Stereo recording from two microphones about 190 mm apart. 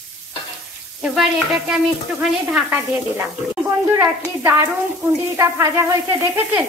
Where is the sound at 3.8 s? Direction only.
15° right (ahead or behind).